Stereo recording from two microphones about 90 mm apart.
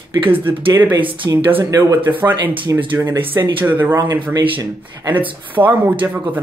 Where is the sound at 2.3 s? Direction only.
65° right (ahead or behind).